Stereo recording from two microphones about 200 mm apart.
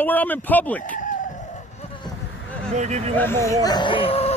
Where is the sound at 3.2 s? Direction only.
15° left (ahead or behind); by 4.3 s 30° left (ahead or behind).